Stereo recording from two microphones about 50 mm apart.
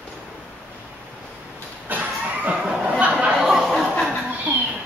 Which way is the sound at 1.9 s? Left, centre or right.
Right.